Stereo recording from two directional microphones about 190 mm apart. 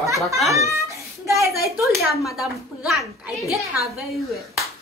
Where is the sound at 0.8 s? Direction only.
15° right (ahead or behind).